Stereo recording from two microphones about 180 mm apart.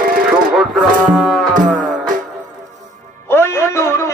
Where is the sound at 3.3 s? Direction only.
15° left (ahead or behind).